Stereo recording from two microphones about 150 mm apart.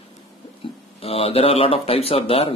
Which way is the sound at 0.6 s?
35° left (ahead or behind).